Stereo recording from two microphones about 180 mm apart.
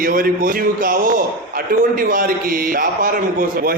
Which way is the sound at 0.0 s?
50° right (ahead or behind).